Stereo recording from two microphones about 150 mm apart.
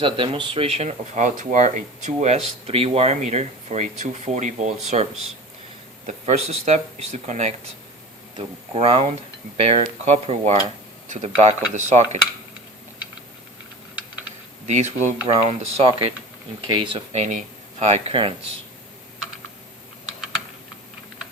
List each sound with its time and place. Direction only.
0.0 s speech: 35° right (ahead or behind); by 5.0 s 50° right (ahead or behind)
6.1 s speech: 45° right (ahead or behind)
14.7 s speech: 50° right (ahead or behind)